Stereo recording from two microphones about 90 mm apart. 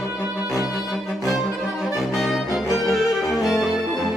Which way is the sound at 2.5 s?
40° left (ahead or behind).